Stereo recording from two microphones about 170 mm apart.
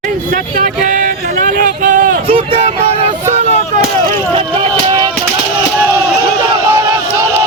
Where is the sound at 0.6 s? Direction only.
50° right (ahead or behind).